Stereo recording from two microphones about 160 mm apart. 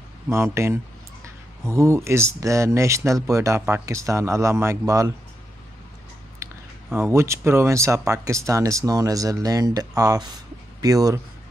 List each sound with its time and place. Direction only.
0.3 s a man's voice: 15° right (ahead or behind)
6.4 s a sound: 20° right (ahead or behind)
6.9 s speech: 15° right (ahead or behind)